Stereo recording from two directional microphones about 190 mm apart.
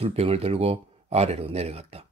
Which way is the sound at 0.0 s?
30° right (ahead or behind).